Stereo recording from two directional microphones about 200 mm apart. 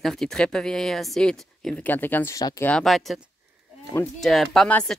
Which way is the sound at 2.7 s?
Centre (ahead or behind).